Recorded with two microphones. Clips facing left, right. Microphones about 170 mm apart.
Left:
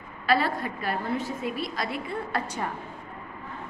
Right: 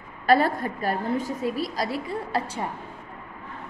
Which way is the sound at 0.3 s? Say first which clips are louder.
Right 4 dB; 45° right (ahead or behind).